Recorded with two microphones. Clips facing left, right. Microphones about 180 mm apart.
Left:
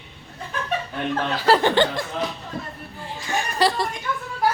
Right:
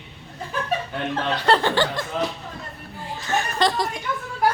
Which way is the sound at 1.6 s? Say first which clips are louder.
Left 3 dB; 15° left (ahead or behind).